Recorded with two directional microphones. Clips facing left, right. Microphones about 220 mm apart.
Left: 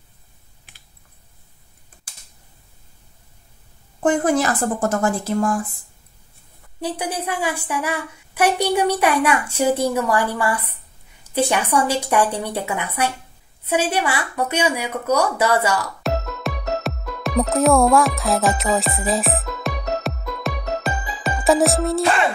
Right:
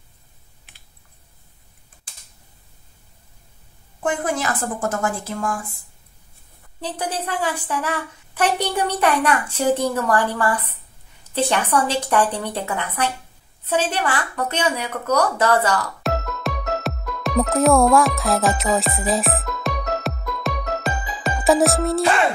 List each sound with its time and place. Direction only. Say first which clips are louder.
4.0 s a woman's voice: left 6 dB; 40° left (ahead or behind)
6.8 s a woman's voice: left 2 dB; 10° left (ahead or behind)
16.0 s music: even; centre (ahead or behind)